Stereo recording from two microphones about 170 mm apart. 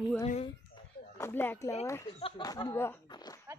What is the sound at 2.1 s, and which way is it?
Speech, 30° left (ahead or behind).